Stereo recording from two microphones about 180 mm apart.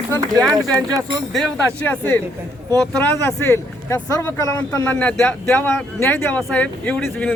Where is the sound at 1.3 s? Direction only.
5° left (ahead or behind).